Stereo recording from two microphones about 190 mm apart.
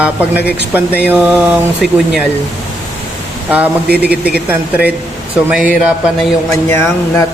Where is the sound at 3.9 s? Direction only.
55° right (ahead or behind).